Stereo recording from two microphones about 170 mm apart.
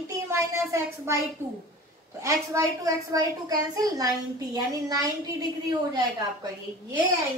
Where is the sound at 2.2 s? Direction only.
20° right (ahead or behind).